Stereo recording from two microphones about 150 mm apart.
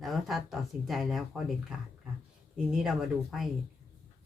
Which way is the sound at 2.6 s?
5° right (ahead or behind).